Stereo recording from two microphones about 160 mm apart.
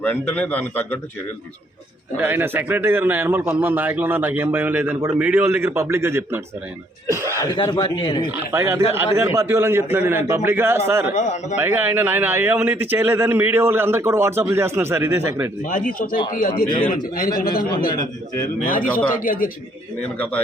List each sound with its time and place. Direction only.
0.0 s a man's voice: 10° left (ahead or behind)
2.2 s a man's voice: 15° right (ahead or behind)
7.1 s a sound: 15° right (ahead or behind)
7.3 s speech: 30° left (ahead or behind)
8.3 s a man's voice: 15° right (ahead or behind)
11.1 s a man's voice: 45° left (ahead or behind)
11.6 s a man's voice: 15° right (ahead or behind)
16.3 s speech: 60° left (ahead or behind)
20.0 s a man's voice: 10° left (ahead or behind)